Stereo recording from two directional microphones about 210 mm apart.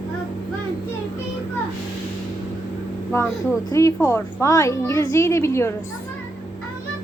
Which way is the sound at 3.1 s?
15° left (ahead or behind).